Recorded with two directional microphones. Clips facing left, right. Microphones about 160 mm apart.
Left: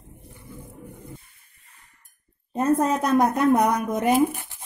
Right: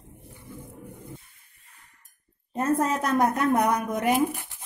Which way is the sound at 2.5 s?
15° left (ahead or behind).